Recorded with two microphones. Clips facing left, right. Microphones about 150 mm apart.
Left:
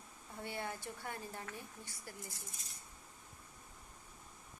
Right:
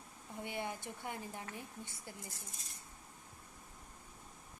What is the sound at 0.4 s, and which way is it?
Speech, 15° right (ahead or behind).